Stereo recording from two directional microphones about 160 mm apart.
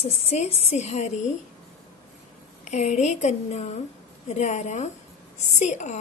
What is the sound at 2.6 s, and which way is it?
Speech, 45° left (ahead or behind).